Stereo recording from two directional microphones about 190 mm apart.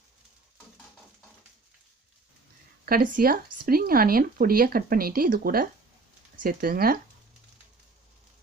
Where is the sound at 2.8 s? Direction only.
50° right (ahead or behind).